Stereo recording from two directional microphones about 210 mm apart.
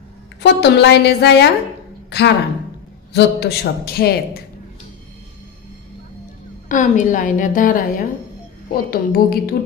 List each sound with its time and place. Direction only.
0.4 s a man's voice: 55° left (ahead or behind)
2.0 s a sound: 55° left (ahead or behind)
3.1 s a man's voice: 50° left (ahead or behind)
6.7 s a woman's voice: 35° left (ahead or behind)